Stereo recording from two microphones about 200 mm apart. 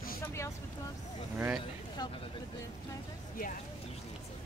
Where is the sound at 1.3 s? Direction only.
10° right (ahead or behind).